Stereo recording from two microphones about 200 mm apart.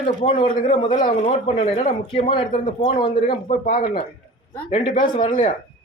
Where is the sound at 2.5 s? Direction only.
40° left (ahead or behind).